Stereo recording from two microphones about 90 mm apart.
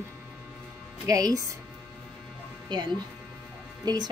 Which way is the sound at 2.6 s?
60° right (ahead or behind).